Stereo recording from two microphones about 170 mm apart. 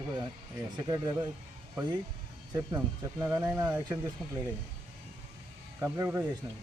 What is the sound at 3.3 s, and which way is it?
Speech, 20° right (ahead or behind).